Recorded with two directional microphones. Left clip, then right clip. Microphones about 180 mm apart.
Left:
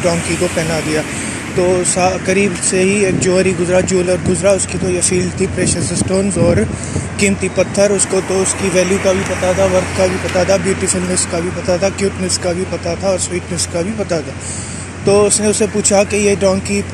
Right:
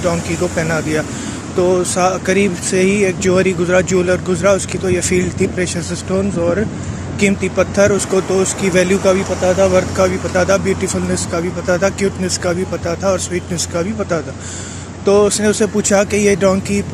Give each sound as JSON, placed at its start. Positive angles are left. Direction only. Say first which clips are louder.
{"t": 0.6, "sound": "speech", "louder": "left 1 dB", "side_deg": -10}
{"t": 7.2, "sound": "speech", "louder": "even", "side_deg": -5}
{"t": 8.3, "sound": "speech", "louder": "even", "side_deg": -20}
{"t": 9.9, "sound": "speech", "louder": "even", "side_deg": -10}
{"t": 15.0, "sound": "speech", "louder": "even", "side_deg": -15}